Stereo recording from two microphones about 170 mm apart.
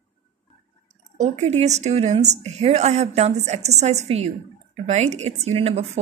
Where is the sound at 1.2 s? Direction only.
40° right (ahead or behind).